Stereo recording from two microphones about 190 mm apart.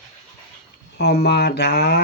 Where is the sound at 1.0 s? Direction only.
60° left (ahead or behind).